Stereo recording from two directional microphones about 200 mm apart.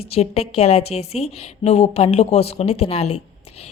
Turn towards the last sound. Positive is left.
turn(degrees=30)  # may be behind; listen again after turning